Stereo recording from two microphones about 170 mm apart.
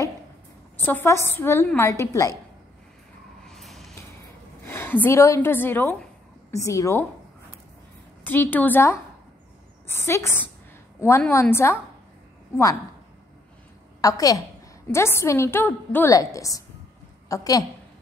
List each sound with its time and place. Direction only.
0.7 s a woman's voice: 10° left (ahead or behind)
3.4 s vehicle: centre (ahead or behind)
4.2 s a sound: 15° left (ahead or behind)
6.5 s a woman's voice: 20° left (ahead or behind)
8.2 s a woman's voice: 10° left (ahead or behind)
14.0 s a woman's voice: 20° left (ahead or behind)